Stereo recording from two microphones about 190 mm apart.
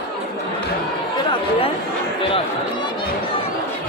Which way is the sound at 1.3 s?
30° left (ahead or behind).